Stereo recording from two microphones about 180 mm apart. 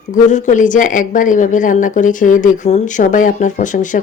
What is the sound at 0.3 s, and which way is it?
Speech, 45° left (ahead or behind).